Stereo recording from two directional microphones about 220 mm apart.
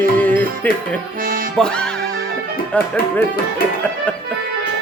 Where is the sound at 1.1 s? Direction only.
40° right (ahead or behind).